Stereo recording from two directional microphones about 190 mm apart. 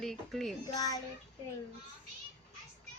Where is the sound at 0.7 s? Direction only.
20° left (ahead or behind).